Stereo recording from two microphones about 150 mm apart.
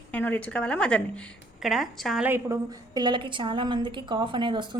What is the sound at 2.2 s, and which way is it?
Speech, 15° right (ahead or behind).